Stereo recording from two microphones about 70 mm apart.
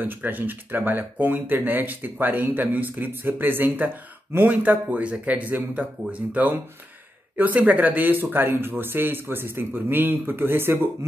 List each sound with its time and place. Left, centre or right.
0.0 s speech: right